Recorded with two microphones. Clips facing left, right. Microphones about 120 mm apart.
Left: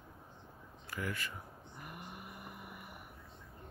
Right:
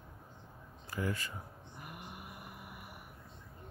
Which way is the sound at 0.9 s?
30° right (ahead or behind).